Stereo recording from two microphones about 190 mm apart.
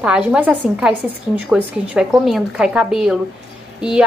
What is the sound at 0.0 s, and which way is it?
A woman's voice, 5° right (ahead or behind).